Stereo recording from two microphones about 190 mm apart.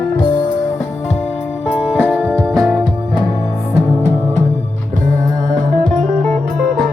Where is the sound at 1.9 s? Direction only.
5° left (ahead or behind).